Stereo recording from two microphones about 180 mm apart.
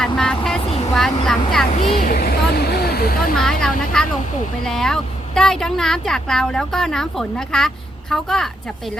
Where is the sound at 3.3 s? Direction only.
Centre (ahead or behind).